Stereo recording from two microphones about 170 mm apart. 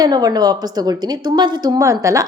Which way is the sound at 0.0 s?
25° right (ahead or behind).